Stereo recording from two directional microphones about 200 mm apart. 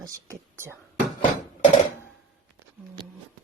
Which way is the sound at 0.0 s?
15° right (ahead or behind).